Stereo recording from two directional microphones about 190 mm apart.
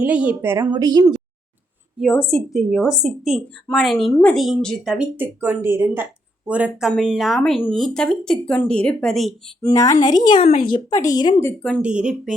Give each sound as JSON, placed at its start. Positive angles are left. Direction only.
{"t": 0.0, "sound": "a woman's voice", "side_deg": -5}
{"t": 2.0, "sound": "a woman's voice", "side_deg": 0}
{"t": 9.6, "sound": "speech", "side_deg": 15}
{"t": 11.4, "sound": "speech", "side_deg": 5}
{"t": 11.8, "sound": "speech", "side_deg": -5}